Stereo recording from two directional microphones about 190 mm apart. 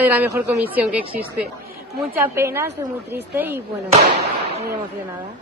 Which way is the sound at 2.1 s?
10° right (ahead or behind).